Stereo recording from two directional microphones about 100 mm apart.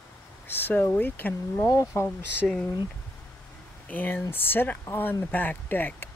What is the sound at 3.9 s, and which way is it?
Speech, 20° left (ahead or behind).